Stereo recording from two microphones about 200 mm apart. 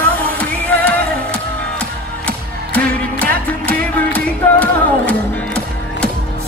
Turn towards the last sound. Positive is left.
turn(degrees=5)  # may be behind; listen again after turning